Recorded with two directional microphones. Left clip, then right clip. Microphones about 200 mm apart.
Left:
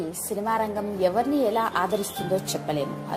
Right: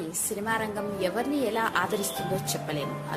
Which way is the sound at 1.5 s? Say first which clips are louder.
Left 3 dB; 15° left (ahead or behind).